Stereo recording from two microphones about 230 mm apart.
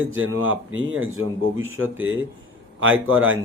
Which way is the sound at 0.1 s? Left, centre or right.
Right.